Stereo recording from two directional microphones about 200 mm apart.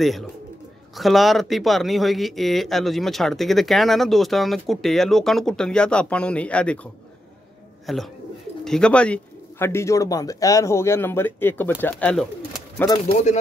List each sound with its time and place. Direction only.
0.0 s a man's voice: centre (ahead or behind)
12.7 s speech: 15° left (ahead or behind)